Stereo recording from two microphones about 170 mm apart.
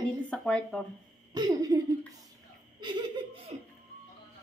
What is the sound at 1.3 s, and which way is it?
Speech, 25° right (ahead or behind).